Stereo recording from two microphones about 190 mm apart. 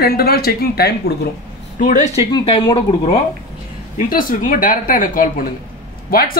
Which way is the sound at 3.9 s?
45° left (ahead or behind).